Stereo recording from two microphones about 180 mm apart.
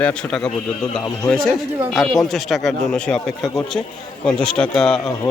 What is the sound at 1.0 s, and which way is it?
Speech, 15° left (ahead or behind).